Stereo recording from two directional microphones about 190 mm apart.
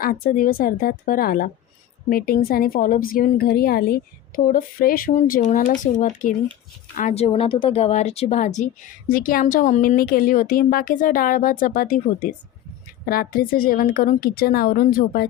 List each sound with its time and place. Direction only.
0.0 s a woman's voice: 45° left (ahead or behind)